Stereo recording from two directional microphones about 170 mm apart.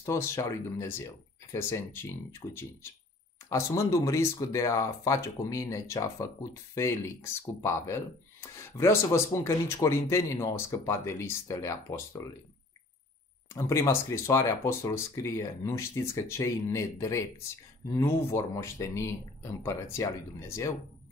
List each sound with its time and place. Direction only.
0.0 s speech: 15° left (ahead or behind)
13.5 s speech: 15° left (ahead or behind)